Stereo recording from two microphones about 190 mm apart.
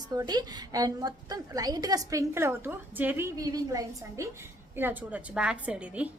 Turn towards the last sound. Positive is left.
turn(degrees=-5)  # may be behind; listen again after turning